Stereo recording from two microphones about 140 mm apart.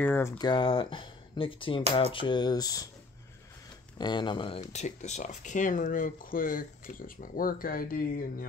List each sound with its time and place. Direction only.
0.0 s speech: 15° left (ahead or behind)
0.4 s speech: 35° left (ahead or behind)
4.0 s speech: 35° left (ahead or behind)
4.7 s speech: 55° left (ahead or behind); by 8.5 s 90° left